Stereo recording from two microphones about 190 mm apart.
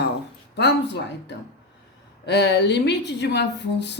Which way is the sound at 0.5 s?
65° left (ahead or behind).